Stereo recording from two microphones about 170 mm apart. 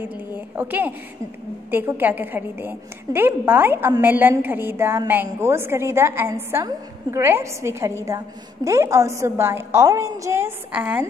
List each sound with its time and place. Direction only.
0.6 s a woman's voice: 10° right (ahead or behind)